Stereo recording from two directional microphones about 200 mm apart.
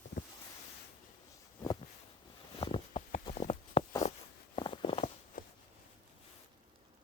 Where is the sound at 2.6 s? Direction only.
25° left (ahead or behind).